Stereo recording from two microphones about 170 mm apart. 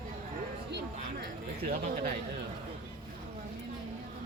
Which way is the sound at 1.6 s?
40° right (ahead or behind).